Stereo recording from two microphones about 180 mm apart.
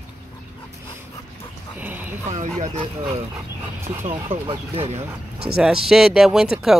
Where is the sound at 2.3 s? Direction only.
40° right (ahead or behind).